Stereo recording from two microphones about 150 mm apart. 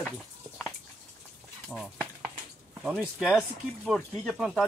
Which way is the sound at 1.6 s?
Centre (ahead or behind).